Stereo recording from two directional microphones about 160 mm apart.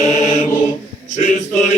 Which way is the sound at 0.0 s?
50° left (ahead or behind).